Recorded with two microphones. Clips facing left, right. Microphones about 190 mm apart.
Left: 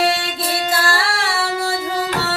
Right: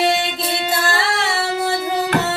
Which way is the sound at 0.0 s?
20° right (ahead or behind).